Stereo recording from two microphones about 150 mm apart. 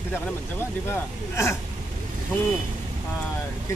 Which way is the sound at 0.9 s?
20° left (ahead or behind).